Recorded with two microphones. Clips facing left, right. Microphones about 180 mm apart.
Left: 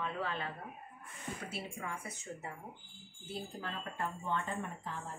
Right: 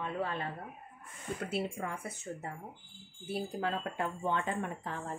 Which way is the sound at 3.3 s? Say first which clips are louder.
Right 8 dB; 75° right (ahead or behind).